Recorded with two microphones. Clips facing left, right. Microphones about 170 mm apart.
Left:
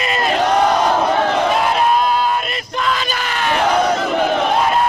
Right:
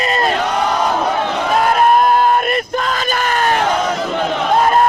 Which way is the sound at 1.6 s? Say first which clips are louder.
Right 3 dB; 50° right (ahead or behind).